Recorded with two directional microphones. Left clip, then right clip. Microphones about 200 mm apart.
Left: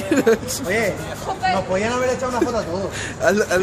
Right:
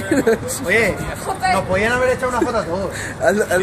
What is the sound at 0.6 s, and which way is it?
Speech, 45° right (ahead or behind).